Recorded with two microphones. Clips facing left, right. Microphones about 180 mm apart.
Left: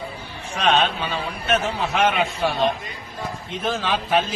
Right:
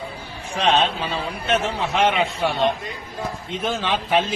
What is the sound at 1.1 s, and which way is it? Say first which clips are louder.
A man's voice: even; 30° right (ahead or behind).